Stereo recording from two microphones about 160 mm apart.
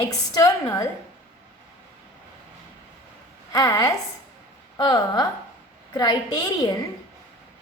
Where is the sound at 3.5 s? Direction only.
20° left (ahead or behind).